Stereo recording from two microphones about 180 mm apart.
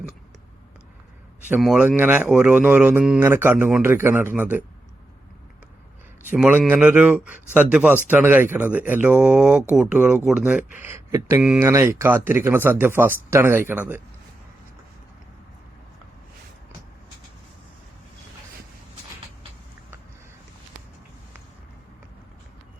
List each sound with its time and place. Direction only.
1.5 s a man's voice: 5° right (ahead or behind)
6.3 s a man's voice: 5° right (ahead or behind)